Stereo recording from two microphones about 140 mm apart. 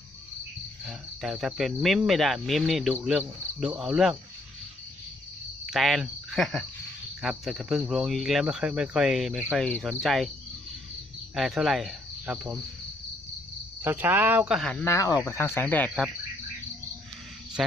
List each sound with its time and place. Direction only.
0.8 s cricket: centre (ahead or behind)
5.7 s cricket: centre (ahead or behind)
11.3 s speech: centre (ahead or behind)
13.8 s speech: 15° right (ahead or behind)
14.5 s speech: 5° left (ahead or behind)
15.0 s speech: 25° left (ahead or behind)
17.6 s cricket: 5° right (ahead or behind)